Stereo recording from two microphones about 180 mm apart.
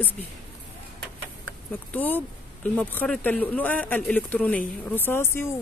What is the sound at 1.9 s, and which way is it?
Speech, 10° left (ahead or behind).